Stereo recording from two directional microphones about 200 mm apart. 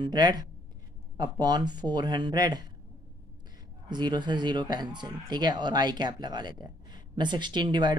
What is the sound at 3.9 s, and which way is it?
Speech, 20° right (ahead or behind).